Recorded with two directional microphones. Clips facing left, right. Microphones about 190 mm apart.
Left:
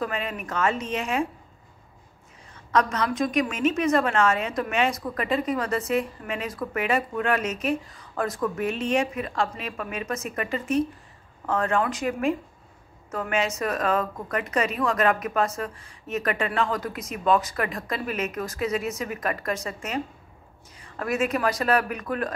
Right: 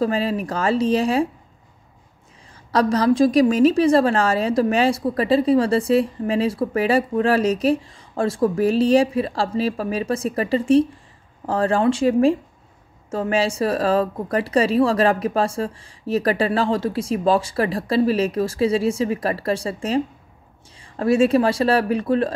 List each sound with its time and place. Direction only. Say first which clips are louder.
0.0 s a woman's voice: right 9 dB; 30° right (ahead or behind)
2.5 s a woman's voice: right 5 dB; 35° right (ahead or behind)